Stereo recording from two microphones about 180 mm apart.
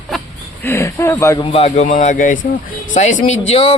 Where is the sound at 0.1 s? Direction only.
Centre (ahead or behind).